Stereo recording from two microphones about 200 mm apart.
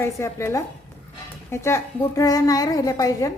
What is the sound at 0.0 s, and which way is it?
A woman's voice, 15° left (ahead or behind).